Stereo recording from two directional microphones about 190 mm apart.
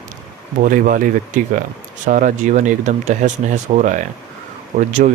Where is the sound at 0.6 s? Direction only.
45° right (ahead or behind).